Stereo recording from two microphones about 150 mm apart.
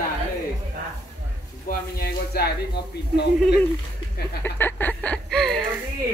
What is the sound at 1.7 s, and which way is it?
Speech, 90° left.